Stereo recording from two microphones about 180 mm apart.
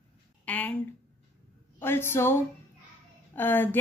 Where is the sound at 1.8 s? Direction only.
15° left (ahead or behind).